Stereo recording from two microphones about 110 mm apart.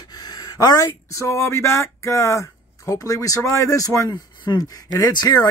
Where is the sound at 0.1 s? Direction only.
35° left (ahead or behind).